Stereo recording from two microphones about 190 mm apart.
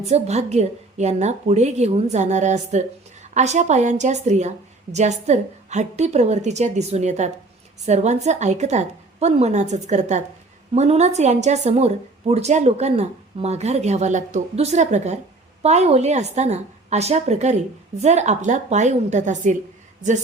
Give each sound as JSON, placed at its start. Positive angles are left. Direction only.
{"t": 0.1, "sound": "a woman's voice", "side_deg": -35}